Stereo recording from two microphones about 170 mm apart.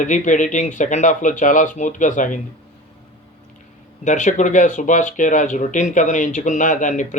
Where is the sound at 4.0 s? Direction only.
45° left (ahead or behind).